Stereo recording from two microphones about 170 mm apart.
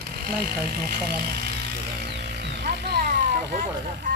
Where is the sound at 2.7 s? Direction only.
75° right (ahead or behind).